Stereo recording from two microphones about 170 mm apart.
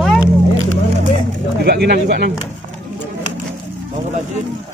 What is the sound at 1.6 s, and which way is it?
Speech, 75° right (ahead or behind).